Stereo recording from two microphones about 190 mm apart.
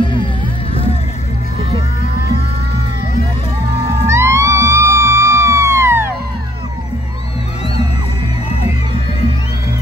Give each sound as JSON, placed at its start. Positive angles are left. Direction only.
{"t": 0.0, "sound": "music", "side_deg": 25}
{"t": 4.1, "sound": "music", "side_deg": -15}